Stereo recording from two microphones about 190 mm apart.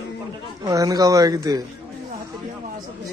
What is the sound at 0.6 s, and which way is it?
Speech, 20° right (ahead or behind).